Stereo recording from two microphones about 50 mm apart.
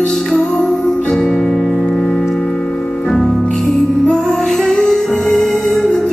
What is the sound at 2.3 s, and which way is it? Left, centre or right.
Tick-tock, centre.